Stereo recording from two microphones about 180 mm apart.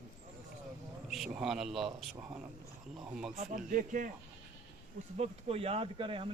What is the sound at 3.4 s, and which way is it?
Speech, 50° right (ahead or behind).